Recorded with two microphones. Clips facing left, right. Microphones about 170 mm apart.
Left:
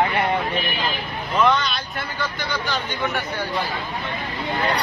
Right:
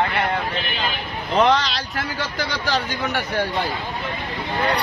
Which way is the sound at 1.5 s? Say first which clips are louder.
Right 2 dB; 90° right.